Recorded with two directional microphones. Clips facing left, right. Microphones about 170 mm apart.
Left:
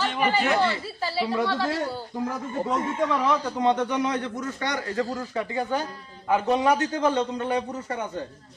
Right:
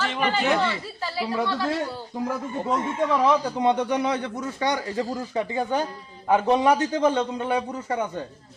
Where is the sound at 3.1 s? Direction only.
10° right (ahead or behind).